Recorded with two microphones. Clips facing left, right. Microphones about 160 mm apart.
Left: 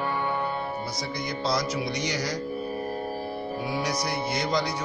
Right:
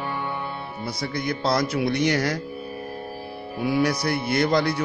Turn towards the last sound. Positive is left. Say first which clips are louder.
# right 6 dB
turn(degrees=-60)  # may be behind; listen again after turning